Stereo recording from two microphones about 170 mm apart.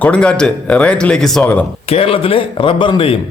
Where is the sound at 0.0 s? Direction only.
5° left (ahead or behind).